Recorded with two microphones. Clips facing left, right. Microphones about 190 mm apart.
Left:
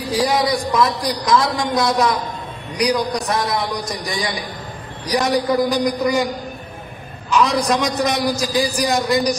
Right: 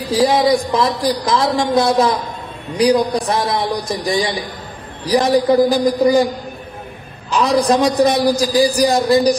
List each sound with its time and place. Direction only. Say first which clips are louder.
0.1 s a man's voice: right 5 dB; 25° right (ahead or behind)
7.2 s a man's voice: right 3 dB; 35° right (ahead or behind)